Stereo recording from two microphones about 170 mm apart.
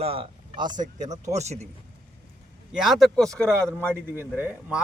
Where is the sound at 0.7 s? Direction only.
45° right (ahead or behind).